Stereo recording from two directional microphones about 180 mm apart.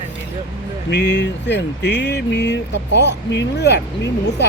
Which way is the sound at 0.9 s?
70° left (ahead or behind).